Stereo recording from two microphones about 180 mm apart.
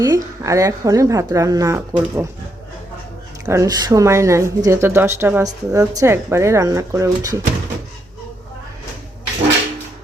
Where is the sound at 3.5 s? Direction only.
20° right (ahead or behind).